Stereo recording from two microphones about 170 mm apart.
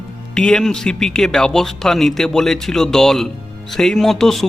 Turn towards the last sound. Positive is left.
turn(degrees=0)  # may be behind; listen again after turning